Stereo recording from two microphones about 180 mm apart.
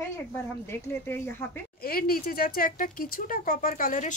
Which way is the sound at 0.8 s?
10° left (ahead or behind).